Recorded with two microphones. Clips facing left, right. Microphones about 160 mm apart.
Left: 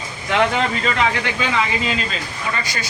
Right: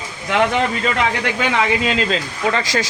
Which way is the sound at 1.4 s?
80° right.